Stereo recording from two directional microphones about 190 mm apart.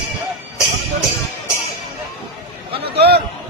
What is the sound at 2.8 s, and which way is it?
Speech, 60° right (ahead or behind).